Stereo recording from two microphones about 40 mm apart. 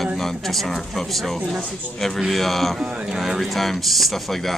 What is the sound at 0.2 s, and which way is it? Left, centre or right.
Speech, centre.